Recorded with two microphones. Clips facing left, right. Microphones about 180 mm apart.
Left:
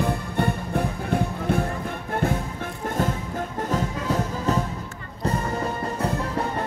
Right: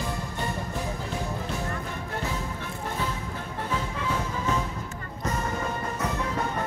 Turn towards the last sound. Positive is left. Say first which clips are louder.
# left 3 dB
turn(degrees=35)  # may be behind; listen again after turning